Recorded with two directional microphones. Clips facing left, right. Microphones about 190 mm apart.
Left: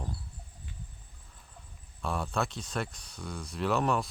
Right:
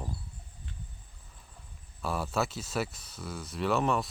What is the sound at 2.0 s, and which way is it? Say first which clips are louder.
Speech: right 1 dB; 5° right (ahead or behind).